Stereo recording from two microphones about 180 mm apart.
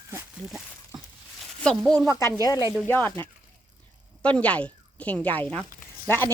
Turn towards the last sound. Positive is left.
turn(degrees=15)  # may be behind; listen again after turning